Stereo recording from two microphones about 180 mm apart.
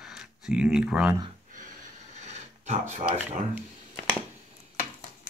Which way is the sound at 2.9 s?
40° right (ahead or behind).